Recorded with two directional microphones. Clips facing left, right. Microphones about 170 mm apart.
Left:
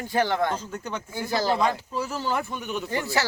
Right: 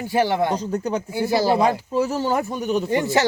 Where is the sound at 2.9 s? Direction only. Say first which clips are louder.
Right 5 dB; 20° right (ahead or behind).